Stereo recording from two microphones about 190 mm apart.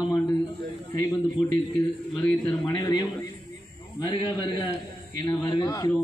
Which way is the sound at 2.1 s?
5° left (ahead or behind).